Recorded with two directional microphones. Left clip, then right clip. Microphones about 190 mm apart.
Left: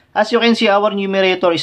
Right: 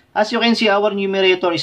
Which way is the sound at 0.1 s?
20° left (ahead or behind).